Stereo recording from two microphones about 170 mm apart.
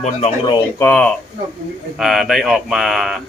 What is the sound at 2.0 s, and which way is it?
Speech, centre (ahead or behind).